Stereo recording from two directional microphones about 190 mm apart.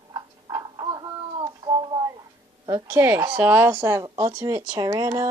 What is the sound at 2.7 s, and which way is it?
Speech, 15° right (ahead or behind).